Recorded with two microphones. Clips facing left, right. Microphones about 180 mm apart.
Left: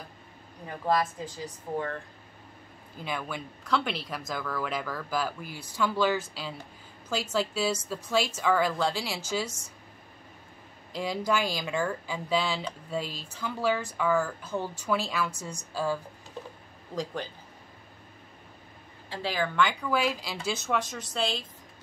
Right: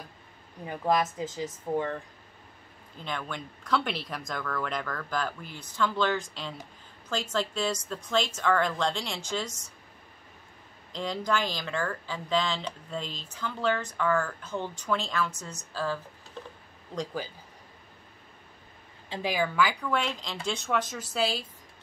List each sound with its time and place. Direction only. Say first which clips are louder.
0.8 s a woman's voice: right 1 dB; 20° right (ahead or behind)
3.0 s a woman's voice: left 1 dB; 10° left (ahead or behind)
10.9 s a woman's voice: left 1 dB; 10° left (ahead or behind)
16.9 s speech: even; centre (ahead or behind)
19.0 s speech: right 2 dB; 15° right (ahead or behind)